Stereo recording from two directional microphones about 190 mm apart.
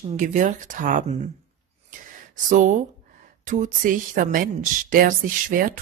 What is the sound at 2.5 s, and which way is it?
A woman's voice, 40° right (ahead or behind).